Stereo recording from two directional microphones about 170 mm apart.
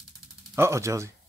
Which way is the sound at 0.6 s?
15° right (ahead or behind).